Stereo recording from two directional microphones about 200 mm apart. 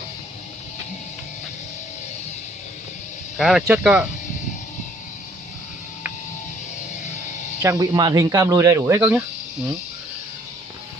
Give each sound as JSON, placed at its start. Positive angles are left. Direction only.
{"t": 3.3, "sound": "speech", "side_deg": 0}
{"t": 7.6, "sound": "speech", "side_deg": -20}